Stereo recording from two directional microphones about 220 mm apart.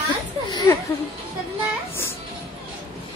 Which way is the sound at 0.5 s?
20° left (ahead or behind).